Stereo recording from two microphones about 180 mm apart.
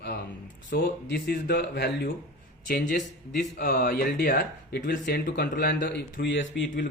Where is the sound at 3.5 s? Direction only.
55° left (ahead or behind); by 6.9 s 90° left.